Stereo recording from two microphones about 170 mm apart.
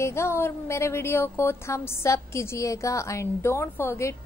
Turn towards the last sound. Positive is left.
turn(degrees=15)  # may be behind; listen again after turning